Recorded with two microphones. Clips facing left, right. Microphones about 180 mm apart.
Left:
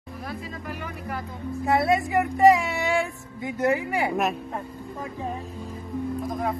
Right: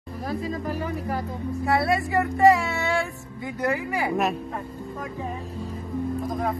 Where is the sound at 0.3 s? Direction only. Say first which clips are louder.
Right 8 dB; 35° right (ahead or behind).